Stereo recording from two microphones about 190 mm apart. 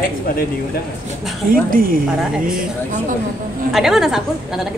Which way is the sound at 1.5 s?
50° right (ahead or behind).